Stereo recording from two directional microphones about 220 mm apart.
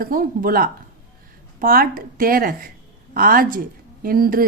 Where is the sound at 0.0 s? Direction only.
40° right (ahead or behind).